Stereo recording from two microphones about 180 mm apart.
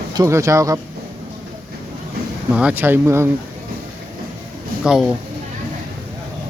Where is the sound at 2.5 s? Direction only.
5° right (ahead or behind).